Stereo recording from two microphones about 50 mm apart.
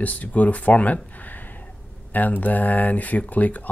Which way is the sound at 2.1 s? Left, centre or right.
Left.